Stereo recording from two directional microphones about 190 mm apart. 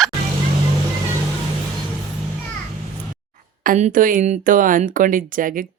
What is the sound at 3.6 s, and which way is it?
Speech, 40° right (ahead or behind).